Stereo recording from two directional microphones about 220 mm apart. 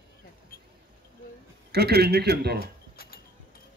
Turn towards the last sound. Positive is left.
turn(degrees=45)  # may be behind; listen again after turning